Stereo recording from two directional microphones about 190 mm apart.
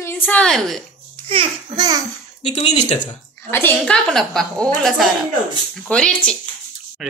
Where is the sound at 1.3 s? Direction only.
25° right (ahead or behind).